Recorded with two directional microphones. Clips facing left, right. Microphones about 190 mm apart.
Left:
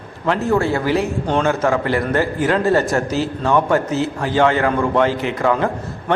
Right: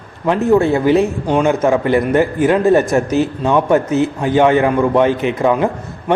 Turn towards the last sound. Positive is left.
turn(degrees=-20)  # may be behind; listen again after turning